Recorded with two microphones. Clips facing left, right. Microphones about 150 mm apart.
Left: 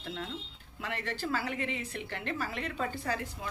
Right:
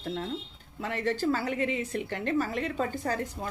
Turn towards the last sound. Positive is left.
turn(degrees=-45)  # may be behind; listen again after turning